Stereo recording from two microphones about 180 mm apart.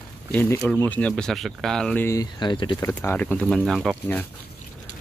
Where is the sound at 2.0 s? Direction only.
20° left (ahead or behind).